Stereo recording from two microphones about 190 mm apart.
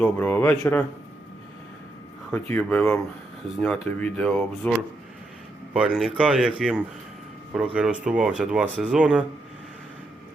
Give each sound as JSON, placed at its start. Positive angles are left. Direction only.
{"t": 0.0, "sound": "speech", "side_deg": 10}
{"t": 2.3, "sound": "speech", "side_deg": 5}
{"t": 5.7, "sound": "speech", "side_deg": -5}